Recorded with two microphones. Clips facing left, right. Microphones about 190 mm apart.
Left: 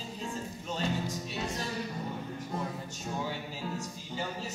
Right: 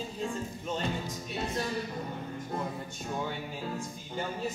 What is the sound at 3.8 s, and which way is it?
Music, 55° right (ahead or behind).